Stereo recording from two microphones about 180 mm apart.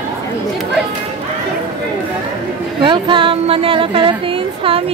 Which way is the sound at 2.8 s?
25° right (ahead or behind).